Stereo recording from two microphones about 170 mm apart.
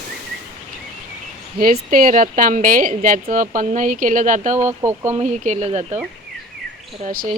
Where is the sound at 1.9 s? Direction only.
55° right (ahead or behind).